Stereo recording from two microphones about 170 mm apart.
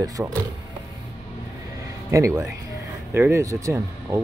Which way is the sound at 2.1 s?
20° right (ahead or behind).